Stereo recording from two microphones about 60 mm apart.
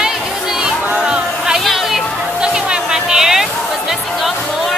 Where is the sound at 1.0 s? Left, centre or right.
Centre.